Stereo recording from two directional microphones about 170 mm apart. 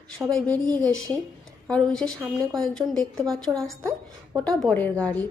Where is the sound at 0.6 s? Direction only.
20° right (ahead or behind).